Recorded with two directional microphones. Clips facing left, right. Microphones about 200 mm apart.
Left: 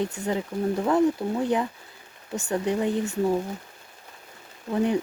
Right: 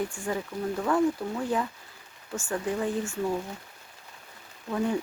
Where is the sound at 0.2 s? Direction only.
20° left (ahead or behind).